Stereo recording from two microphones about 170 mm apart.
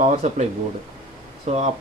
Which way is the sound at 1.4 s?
40° right (ahead or behind).